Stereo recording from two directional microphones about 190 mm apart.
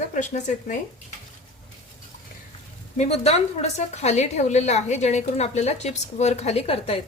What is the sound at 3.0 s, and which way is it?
A woman's voice, 35° left (ahead or behind).